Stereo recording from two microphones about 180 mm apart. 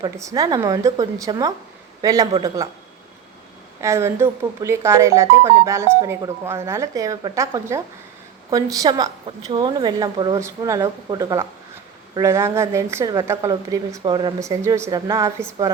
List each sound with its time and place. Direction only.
0.0 s speech: 20° right (ahead or behind)
3.8 s a woman's voice: 15° right (ahead or behind)